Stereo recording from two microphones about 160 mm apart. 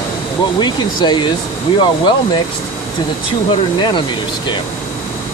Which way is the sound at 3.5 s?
30° left (ahead or behind).